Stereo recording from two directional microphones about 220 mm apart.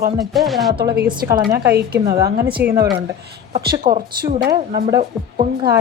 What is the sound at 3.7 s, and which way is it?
Speech, 40° right (ahead or behind).